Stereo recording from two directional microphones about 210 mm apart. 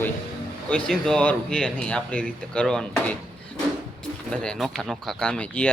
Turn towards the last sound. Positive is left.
turn(degrees=5)  # may be behind; listen again after turning